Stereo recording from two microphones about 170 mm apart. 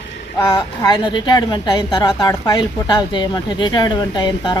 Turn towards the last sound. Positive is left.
turn(degrees=25)  # may be behind; listen again after turning